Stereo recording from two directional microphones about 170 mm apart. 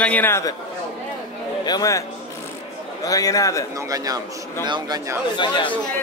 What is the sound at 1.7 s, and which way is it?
Speech, 20° left (ahead or behind).